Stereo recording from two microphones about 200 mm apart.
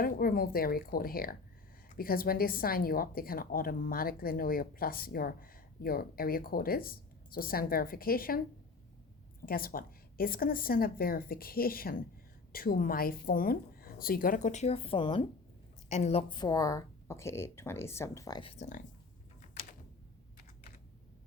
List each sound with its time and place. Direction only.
0.0 s a woman's voice: 50° left (ahead or behind)
9.5 s a woman's voice: 45° left (ahead or behind); by 18.5 s 20° left (ahead or behind)